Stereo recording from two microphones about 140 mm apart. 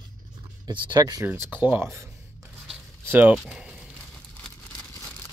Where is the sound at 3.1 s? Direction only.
10° right (ahead or behind).